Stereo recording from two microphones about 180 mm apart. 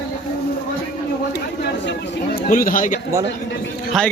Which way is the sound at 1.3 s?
70° left (ahead or behind).